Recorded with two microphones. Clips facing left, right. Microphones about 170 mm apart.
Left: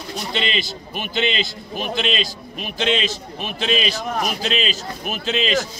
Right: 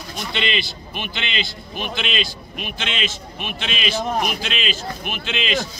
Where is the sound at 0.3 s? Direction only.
35° left (ahead or behind).